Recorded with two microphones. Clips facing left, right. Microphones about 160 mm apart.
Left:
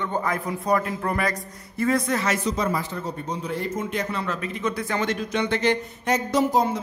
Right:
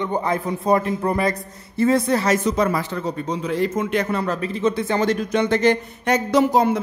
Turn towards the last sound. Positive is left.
turn(degrees=-65)  # may be behind; listen again after turning